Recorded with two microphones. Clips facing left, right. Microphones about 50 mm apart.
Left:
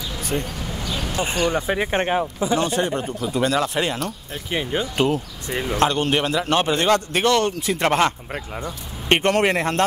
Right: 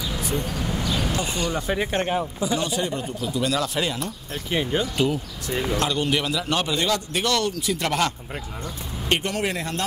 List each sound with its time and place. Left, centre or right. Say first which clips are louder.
0.6 s a sound: right 3 dB; centre
1.2 s a man's voice: left 5 dB; left
1.7 s a man's voice: left 3 dB; left
4.5 s speech: even; centre
4.9 s a man's voice: left 3 dB; left
9.1 s speech: left 7 dB; left